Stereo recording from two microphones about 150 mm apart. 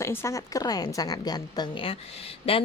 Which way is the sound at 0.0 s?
15° left (ahead or behind).